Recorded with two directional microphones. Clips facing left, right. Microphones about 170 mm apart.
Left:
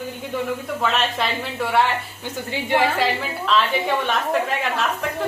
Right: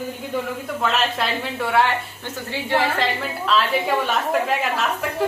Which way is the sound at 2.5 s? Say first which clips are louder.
Left 1 dB; 15° left (ahead or behind).